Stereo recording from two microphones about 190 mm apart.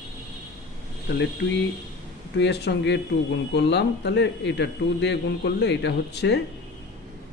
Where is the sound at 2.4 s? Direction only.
65° left (ahead or behind).